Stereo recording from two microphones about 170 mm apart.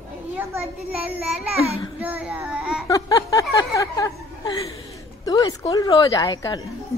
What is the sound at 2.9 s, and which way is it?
A woman's voice, 20° left (ahead or behind).